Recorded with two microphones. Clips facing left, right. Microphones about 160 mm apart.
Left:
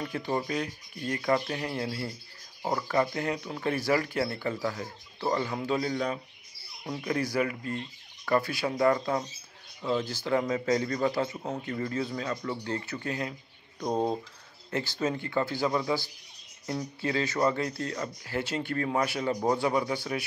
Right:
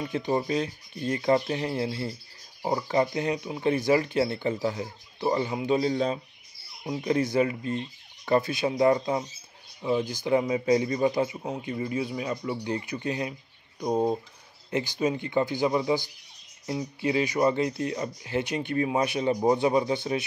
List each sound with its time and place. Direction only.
0.0 s speech: 20° right (ahead or behind)